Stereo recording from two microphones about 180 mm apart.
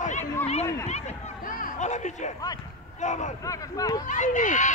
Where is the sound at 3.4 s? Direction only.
20° left (ahead or behind).